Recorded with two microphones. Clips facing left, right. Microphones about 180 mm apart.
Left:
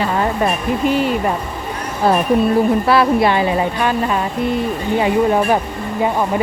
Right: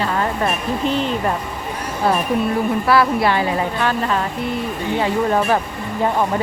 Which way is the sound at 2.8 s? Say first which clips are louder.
Left 2 dB; 25° left (ahead or behind).